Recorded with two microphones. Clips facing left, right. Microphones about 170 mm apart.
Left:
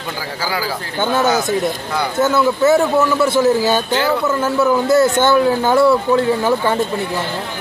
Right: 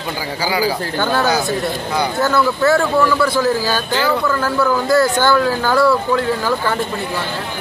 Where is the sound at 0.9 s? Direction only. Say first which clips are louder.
Left 3 dB; 20° left (ahead or behind).